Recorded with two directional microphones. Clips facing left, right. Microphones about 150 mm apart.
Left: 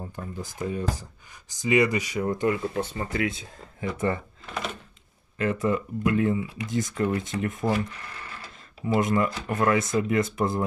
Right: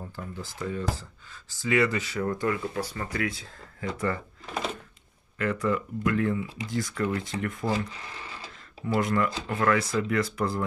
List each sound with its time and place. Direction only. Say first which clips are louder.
0.1 s speech: left 2 dB; 20° left (ahead or behind)
5.4 s speech: left 2 dB; 20° left (ahead or behind)
8.8 s speech: left 2 dB; 20° left (ahead or behind)